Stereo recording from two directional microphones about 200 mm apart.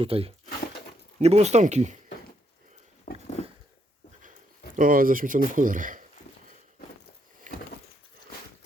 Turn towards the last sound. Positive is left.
turn(degrees=-40)  # may be behind; listen again after turning